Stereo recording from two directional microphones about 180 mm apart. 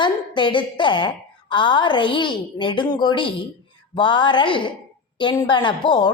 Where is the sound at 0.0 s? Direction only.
25° left (ahead or behind).